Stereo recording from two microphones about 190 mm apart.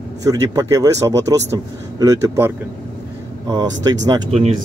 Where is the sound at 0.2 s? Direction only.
20° right (ahead or behind).